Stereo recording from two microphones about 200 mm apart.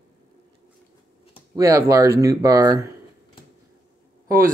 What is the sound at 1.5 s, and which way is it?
Speech, 15° right (ahead or behind).